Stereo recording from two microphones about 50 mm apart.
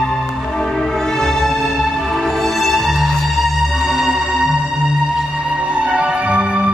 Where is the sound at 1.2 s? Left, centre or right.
Centre.